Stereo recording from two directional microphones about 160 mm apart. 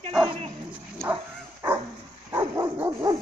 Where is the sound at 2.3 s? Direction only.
15° right (ahead or behind).